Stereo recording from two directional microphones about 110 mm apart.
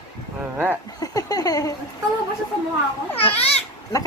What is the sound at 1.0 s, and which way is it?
Speech, 35° left (ahead or behind).